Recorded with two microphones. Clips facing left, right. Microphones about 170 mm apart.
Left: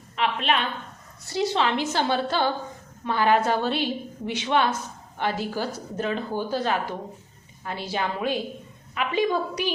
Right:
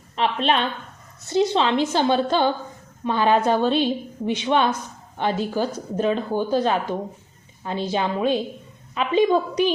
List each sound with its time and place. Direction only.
0.2 s a woman's voice: 30° right (ahead or behind)
1.3 s speech: 20° right (ahead or behind)